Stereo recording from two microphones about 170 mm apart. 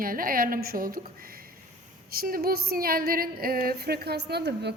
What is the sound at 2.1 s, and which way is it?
Speech, 60° right (ahead or behind).